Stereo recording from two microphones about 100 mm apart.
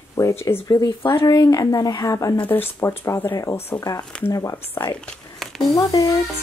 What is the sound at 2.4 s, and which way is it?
Speech, 20° left (ahead or behind).